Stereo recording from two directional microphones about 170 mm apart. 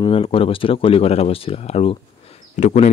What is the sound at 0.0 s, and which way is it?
Speech, 35° left (ahead or behind).